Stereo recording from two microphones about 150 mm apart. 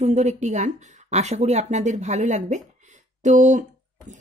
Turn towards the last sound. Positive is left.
turn(degrees=-55)  # may be behind; listen again after turning